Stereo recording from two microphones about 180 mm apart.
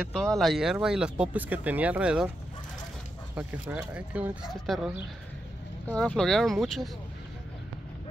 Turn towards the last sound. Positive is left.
turn(degrees=0)  # may be behind; listen again after turning